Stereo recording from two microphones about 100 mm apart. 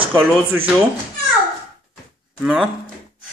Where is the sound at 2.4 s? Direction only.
Centre (ahead or behind).